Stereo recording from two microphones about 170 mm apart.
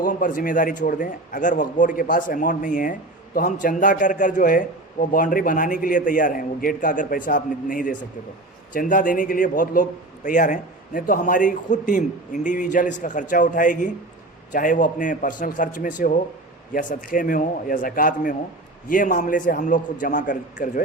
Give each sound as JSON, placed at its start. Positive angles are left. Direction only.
{"t": 0.0, "sound": "speech", "side_deg": 50}